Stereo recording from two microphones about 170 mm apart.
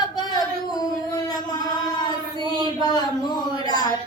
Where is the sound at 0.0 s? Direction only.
25° left (ahead or behind).